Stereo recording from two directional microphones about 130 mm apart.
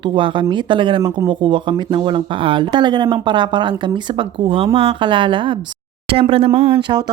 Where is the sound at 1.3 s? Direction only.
40° right (ahead or behind).